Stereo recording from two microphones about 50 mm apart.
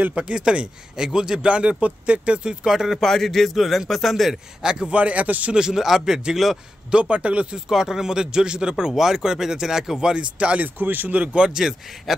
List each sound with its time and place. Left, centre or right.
0.1 s a man's voice: centre
2.6 s speech: centre
3.1 s a man's voice: centre
4.6 s speech: centre
4.9 s a man's voice: right
5.6 s speech: centre
6.9 s a man's voice: right
7.5 s speech: centre
10.6 s speech: right
11.4 s speech: centre
12.1 s a man's voice: centre